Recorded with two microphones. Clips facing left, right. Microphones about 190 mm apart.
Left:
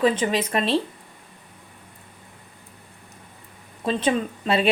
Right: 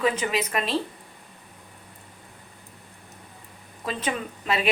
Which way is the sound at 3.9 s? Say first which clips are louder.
Left 7 dB; 30° left (ahead or behind).